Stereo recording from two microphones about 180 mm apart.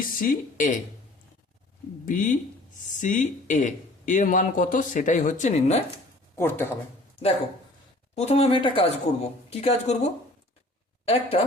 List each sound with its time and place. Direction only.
0.2 s speech: 50° left (ahead or behind)
2.0 s speech: 45° left (ahead or behind)
6.3 s speech: 10° left (ahead or behind)
8.1 s a man's voice: 35° left (ahead or behind)